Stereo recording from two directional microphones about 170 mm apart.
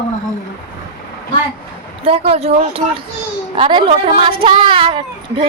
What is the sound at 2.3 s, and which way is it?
Speech, 35° right (ahead or behind).